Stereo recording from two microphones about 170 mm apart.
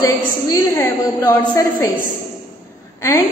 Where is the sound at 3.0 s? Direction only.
15° left (ahead or behind).